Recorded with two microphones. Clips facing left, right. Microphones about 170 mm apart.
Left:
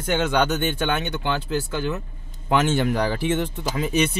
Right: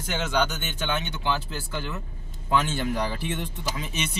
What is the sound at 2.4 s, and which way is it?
Speech, 80° left.